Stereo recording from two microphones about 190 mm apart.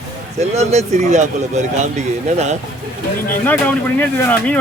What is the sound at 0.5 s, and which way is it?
Speech, 35° right (ahead or behind).